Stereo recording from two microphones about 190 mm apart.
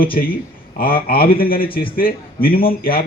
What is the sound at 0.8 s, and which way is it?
A man's voice, 50° left (ahead or behind).